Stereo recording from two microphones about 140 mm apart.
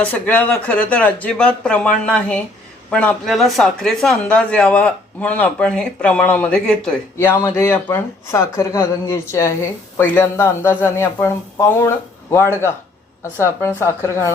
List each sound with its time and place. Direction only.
0.0 s speech: 10° left (ahead or behind)